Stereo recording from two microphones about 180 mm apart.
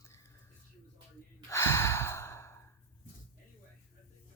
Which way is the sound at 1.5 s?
15° left (ahead or behind).